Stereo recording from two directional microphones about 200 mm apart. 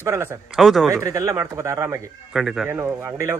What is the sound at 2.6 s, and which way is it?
Speech, 15° right (ahead or behind).